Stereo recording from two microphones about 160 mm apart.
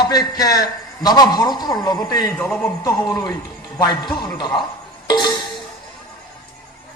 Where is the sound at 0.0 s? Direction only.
25° left (ahead or behind).